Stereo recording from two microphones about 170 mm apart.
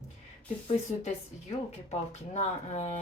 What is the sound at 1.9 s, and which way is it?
A woman's voice, 40° left (ahead or behind).